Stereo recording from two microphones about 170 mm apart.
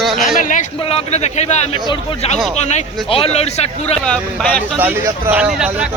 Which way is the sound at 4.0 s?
5° left (ahead or behind).